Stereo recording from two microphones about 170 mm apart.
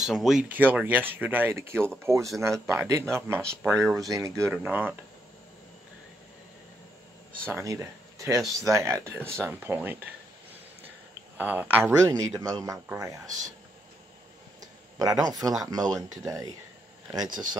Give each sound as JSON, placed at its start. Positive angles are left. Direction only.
{"t": 0.0, "sound": "speech", "side_deg": 0}
{"t": 7.4, "sound": "speech", "side_deg": -15}
{"t": 11.3, "sound": "speech", "side_deg": -10}
{"t": 14.6, "sound": "a sound", "side_deg": -20}
{"t": 15.2, "sound": "speech", "side_deg": -20}